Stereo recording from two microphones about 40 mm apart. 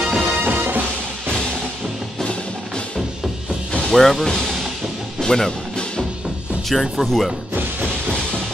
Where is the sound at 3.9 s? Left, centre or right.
Centre.